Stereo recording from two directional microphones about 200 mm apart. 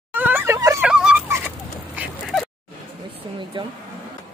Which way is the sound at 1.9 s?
5° right (ahead or behind).